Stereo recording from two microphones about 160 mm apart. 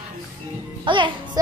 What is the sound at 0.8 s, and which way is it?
Speech, 30° right (ahead or behind).